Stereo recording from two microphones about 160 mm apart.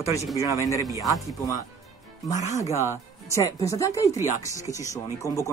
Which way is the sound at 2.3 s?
45° left (ahead or behind).